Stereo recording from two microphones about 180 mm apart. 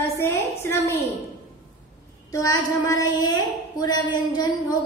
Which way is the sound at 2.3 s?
20° left (ahead or behind).